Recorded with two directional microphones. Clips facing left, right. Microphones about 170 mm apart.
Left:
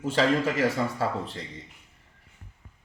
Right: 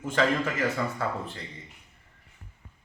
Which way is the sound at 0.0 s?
30° left (ahead or behind).